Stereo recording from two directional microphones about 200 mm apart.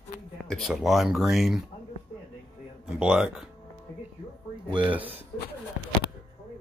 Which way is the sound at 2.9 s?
5° right (ahead or behind).